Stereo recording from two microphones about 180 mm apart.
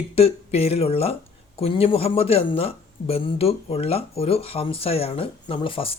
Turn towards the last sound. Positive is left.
turn(degrees=30)  # may be behind; listen again after turning